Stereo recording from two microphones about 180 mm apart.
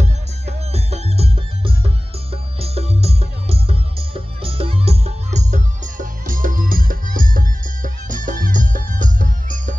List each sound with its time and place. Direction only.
0.0 s music: 35° right (ahead or behind)